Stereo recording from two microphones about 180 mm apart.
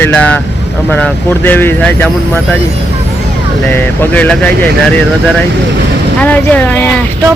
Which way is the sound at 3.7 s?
10° left (ahead or behind).